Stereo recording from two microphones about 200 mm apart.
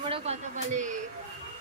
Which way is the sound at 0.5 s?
40° right (ahead or behind).